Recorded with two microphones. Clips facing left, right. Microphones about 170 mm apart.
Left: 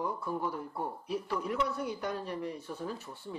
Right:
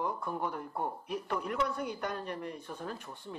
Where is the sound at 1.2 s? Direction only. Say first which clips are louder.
Even; 55° right (ahead or behind).